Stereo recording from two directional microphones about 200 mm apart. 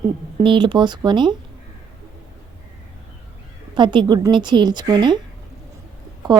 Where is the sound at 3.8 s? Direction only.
25° right (ahead or behind).